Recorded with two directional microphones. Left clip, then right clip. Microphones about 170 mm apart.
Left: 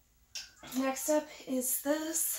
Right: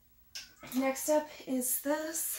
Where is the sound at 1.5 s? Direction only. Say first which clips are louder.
Left 3 dB; 35° right (ahead or behind).